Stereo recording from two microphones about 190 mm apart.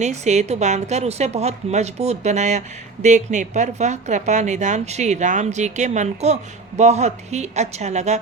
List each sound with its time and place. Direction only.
0.0 s a woman's voice: 35° right (ahead or behind)